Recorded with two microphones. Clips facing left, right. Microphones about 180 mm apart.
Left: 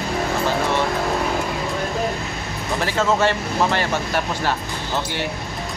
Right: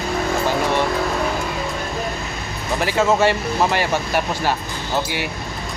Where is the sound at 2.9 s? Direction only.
10° right (ahead or behind).